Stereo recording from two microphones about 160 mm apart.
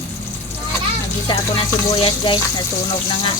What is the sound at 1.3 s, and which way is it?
Frying, 30° left (ahead or behind).